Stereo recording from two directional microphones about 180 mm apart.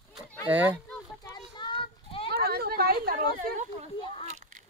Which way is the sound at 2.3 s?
60° right (ahead or behind).